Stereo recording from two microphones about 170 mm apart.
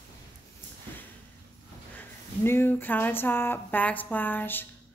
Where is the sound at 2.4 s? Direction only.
15° left (ahead or behind).